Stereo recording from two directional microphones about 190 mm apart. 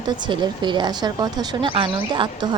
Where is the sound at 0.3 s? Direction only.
25° right (ahead or behind).